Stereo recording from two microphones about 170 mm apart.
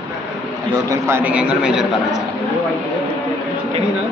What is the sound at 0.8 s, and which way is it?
A man's voice, 15° right (ahead or behind).